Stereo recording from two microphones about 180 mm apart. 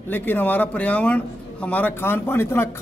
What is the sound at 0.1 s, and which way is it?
A man's voice, 10° left (ahead or behind).